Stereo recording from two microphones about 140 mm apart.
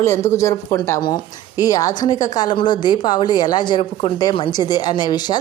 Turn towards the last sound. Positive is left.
turn(degrees=30)  # may be behind; listen again after turning